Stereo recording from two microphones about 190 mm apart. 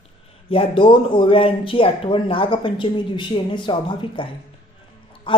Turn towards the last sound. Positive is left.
turn(degrees=25)  # may be behind; listen again after turning